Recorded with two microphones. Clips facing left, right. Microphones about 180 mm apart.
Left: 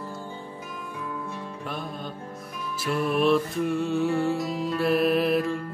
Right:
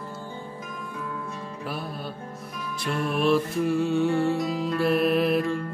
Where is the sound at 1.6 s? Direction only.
5° right (ahead or behind).